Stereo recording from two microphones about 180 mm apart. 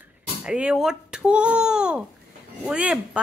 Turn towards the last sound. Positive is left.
turn(degrees=-5)  # may be behind; listen again after turning